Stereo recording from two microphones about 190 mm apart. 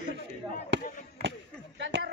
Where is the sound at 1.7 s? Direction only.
70° right (ahead or behind).